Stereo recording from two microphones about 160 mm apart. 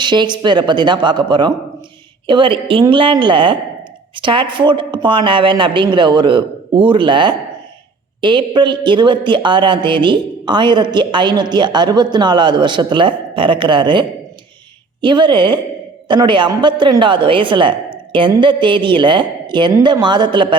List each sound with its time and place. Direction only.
0.0 s a woman's voice: 30° right (ahead or behind)
15.0 s a woman's voice: 30° right (ahead or behind)